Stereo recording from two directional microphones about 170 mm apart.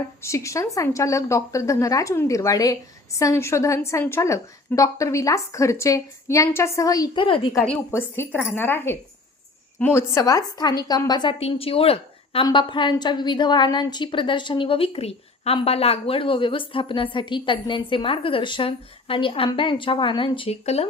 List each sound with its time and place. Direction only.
0.2 s speech: 15° left (ahead or behind)
7.6 s a woman's voice: 10° left (ahead or behind); by 20.8 s 35° left (ahead or behind)